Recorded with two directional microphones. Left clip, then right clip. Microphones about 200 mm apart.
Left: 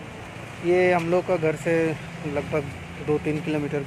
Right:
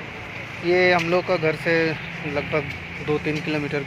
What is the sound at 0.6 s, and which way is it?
Speech, 5° left (ahead or behind).